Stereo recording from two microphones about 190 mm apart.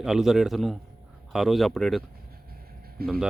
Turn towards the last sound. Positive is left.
turn(degrees=-55)  # may be behind; listen again after turning